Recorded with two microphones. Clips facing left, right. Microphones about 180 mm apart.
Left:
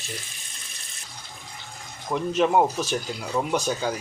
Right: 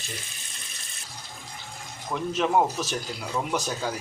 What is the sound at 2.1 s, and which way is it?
Speech, centre (ahead or behind).